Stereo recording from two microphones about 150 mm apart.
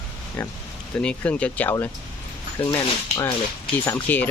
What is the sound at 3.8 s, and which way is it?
Speech, 15° left (ahead or behind).